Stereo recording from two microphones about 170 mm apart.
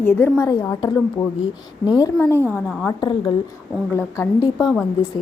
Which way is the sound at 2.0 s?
20° left (ahead or behind).